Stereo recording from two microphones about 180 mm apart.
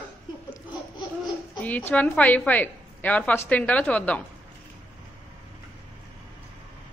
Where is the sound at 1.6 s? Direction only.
10° left (ahead or behind).